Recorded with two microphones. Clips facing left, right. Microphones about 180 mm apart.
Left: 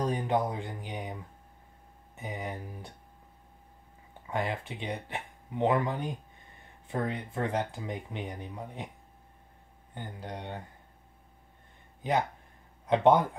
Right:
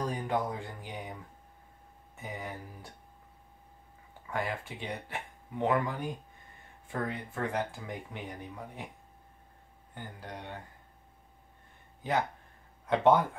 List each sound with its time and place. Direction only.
0.0 s speech: 20° left (ahead or behind)
2.1 s speech: 20° left (ahead or behind)
4.3 s speech: 20° left (ahead or behind)
9.9 s speech: 20° left (ahead or behind)
12.0 s speech: 20° left (ahead or behind)